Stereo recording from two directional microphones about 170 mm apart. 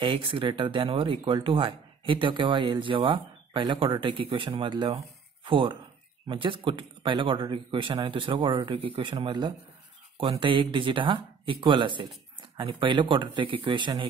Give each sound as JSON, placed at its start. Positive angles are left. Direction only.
{"t": 0.0, "sound": "speech", "side_deg": -30}